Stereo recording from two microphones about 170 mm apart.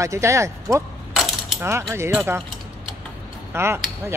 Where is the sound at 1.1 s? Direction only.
Centre (ahead or behind).